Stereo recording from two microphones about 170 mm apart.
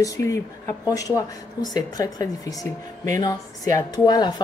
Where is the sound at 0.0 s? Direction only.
20° left (ahead or behind).